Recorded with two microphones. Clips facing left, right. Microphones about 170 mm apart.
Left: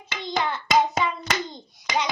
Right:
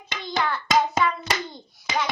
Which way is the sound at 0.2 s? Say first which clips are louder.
Even; 20° left (ahead or behind).